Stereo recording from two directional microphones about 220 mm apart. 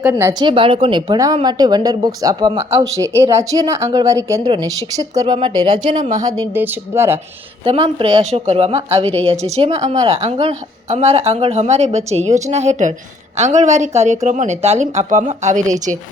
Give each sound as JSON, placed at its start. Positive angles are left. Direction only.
{"t": 0.0, "sound": "a woman's voice", "side_deg": -10}
{"t": 6.0, "sound": "speech", "side_deg": -35}
{"t": 6.2, "sound": "a woman's voice", "side_deg": -15}
{"t": 7.6, "sound": "speech", "side_deg": -25}
{"t": 9.9, "sound": "a woman's voice", "side_deg": -20}
{"t": 10.2, "sound": "speech", "side_deg": -30}